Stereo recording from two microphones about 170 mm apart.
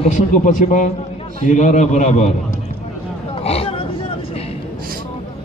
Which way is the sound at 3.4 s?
35° left (ahead or behind).